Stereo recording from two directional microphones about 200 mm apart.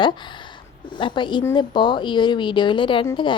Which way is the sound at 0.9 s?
25° left (ahead or behind).